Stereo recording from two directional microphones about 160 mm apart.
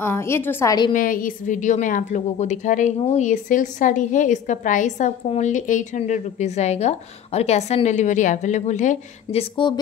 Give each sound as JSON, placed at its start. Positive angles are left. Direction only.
{"t": 0.0, "sound": "a woman's voice", "side_deg": 15}
{"t": 0.9, "sound": "a woman's voice", "side_deg": 60}